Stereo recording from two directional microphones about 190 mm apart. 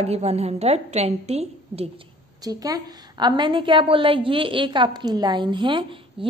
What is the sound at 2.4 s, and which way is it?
A woman's voice, 20° right (ahead or behind).